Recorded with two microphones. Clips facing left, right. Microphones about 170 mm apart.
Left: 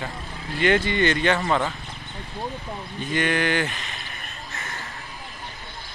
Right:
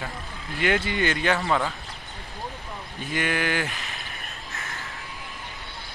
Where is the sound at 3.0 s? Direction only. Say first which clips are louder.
Left 3 dB; 5° right (ahead or behind).